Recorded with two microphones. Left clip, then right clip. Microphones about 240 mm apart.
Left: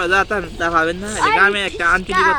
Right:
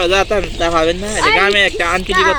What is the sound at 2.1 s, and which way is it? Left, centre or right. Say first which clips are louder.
Speech: right 5 dB; centre.